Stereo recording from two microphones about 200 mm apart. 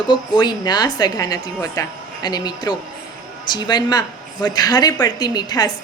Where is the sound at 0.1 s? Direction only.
20° left (ahead or behind).